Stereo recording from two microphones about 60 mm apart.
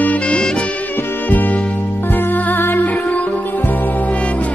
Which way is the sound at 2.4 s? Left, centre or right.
Left.